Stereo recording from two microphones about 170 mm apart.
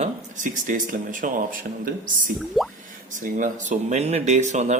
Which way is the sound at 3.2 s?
50° right (ahead or behind).